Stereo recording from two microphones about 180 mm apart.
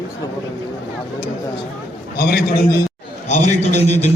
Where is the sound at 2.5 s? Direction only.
20° left (ahead or behind).